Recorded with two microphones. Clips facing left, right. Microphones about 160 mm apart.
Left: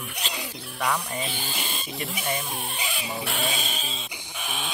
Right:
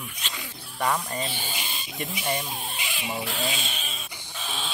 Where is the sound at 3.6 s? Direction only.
35° left (ahead or behind).